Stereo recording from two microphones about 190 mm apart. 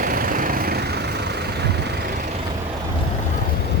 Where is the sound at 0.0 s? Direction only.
50° right (ahead or behind).